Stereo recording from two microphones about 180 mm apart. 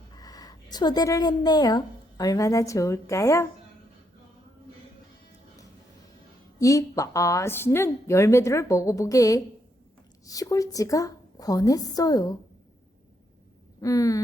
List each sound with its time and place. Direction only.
0.2 s a woman's voice: 20° left (ahead or behind)
6.6 s a woman's voice: 20° left (ahead or behind)
13.8 s a woman's voice: 20° left (ahead or behind)